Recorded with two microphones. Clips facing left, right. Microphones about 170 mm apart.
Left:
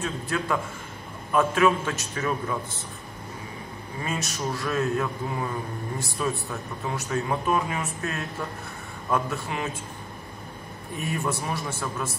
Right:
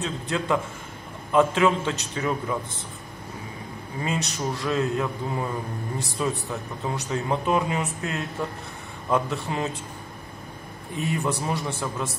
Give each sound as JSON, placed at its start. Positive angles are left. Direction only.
{"t": 0.0, "sound": "speech", "side_deg": -20}
{"t": 4.0, "sound": "speech", "side_deg": -20}
{"t": 11.0, "sound": "speech", "side_deg": -25}